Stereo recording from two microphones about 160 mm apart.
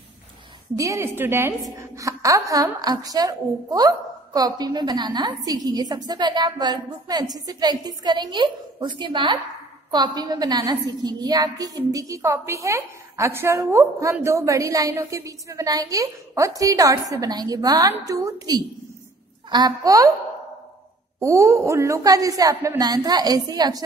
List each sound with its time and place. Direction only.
0.7 s a woman's voice: 20° right (ahead or behind)
21.2 s a woman's voice: 20° right (ahead or behind)